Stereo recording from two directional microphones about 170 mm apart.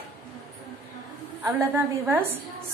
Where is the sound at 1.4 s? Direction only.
15° right (ahead or behind).